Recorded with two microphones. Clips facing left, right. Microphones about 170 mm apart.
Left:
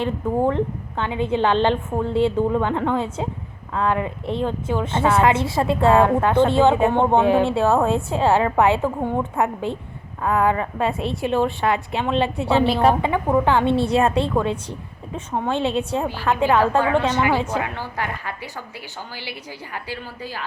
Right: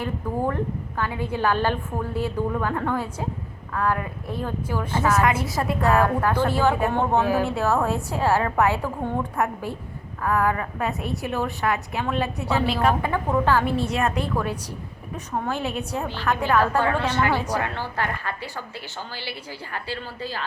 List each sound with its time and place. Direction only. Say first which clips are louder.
0.0 s a woman's voice: left 5 dB; 20° left (ahead or behind)
13.0 s a woman's voice: left 4 dB; 15° left (ahead or behind)
16.3 s a woman's voice: left 3 dB; 15° left (ahead or behind)